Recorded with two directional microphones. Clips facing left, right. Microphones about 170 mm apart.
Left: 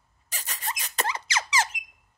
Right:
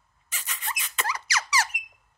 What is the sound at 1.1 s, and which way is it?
Squeak, 25° left (ahead or behind).